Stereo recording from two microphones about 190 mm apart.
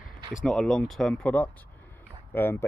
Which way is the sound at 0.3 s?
Centre (ahead or behind).